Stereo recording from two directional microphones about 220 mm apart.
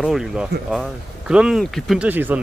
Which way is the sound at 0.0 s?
Centre (ahead or behind).